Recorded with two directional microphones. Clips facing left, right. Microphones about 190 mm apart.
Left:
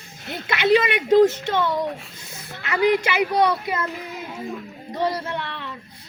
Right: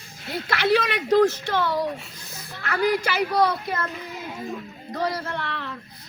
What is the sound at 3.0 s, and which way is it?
Speech, 20° left (ahead or behind).